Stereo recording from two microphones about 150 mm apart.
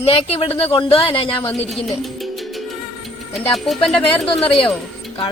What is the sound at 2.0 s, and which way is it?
Music, centre (ahead or behind).